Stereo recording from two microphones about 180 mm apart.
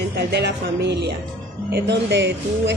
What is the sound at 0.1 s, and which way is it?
Speech, 65° right (ahead or behind).